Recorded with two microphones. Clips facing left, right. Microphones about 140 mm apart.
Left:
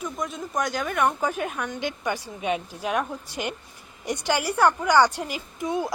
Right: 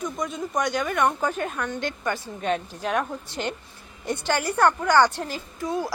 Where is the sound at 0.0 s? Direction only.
Centre (ahead or behind).